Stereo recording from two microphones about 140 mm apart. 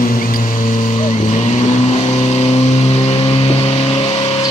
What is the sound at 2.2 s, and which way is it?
Vehicle, 50° left (ahead or behind).